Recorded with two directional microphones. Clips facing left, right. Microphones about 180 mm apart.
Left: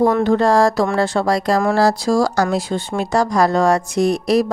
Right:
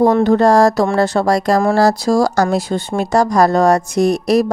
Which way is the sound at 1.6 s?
35° right (ahead or behind).